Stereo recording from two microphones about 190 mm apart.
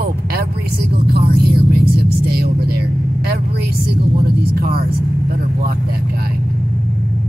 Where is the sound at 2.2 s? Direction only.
55° right (ahead or behind).